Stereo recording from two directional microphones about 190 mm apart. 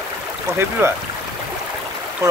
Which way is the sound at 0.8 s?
15° right (ahead or behind).